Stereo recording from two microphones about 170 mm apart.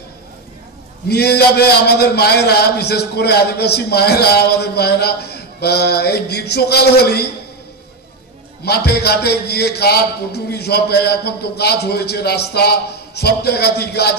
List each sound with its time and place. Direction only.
1.0 s a man's voice: 70° left (ahead or behind)
8.6 s a man's voice: 70° left (ahead or behind)